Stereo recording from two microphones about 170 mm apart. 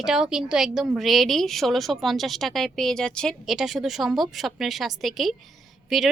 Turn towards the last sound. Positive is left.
turn(degrees=0)  # may be behind; listen again after turning